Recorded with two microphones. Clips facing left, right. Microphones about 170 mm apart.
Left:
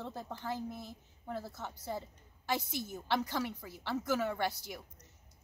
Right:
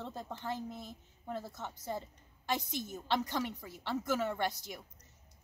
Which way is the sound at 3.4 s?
10° left (ahead or behind).